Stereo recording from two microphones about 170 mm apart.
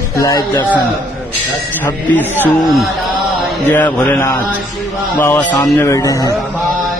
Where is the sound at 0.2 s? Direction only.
20° left (ahead or behind).